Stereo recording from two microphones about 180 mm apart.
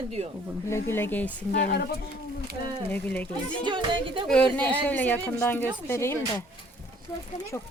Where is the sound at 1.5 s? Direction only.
60° left (ahead or behind).